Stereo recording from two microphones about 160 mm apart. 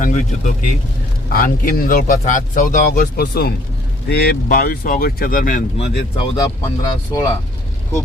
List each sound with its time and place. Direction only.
0.0 s speech: 55° left (ahead or behind)
5.7 s speech: 40° left (ahead or behind)
6.4 s speech: 20° left (ahead or behind)